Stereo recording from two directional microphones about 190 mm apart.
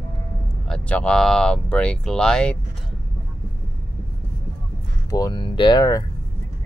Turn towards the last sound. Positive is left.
turn(degrees=20)  # may be behind; listen again after turning